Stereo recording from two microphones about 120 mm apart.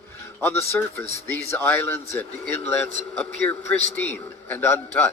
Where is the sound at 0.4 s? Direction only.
20° left (ahead or behind).